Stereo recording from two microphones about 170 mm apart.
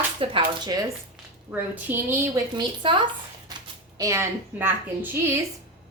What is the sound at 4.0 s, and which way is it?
Speech, 15° right (ahead or behind).